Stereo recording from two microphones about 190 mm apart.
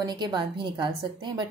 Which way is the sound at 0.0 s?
25° right (ahead or behind).